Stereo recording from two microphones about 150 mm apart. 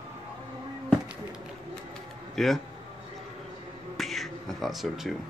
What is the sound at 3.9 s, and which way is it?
Finger snapping, centre (ahead or behind).